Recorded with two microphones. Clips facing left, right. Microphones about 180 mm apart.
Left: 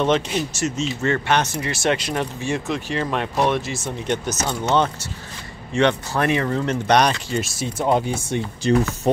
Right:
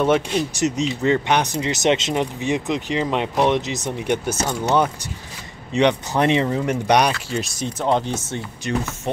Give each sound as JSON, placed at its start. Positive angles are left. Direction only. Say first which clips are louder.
{"t": 0.0, "sound": "speech", "louder": "right 2 dB", "side_deg": -10}
{"t": 8.6, "sound": "speech", "louder": "left 7 dB", "side_deg": 30}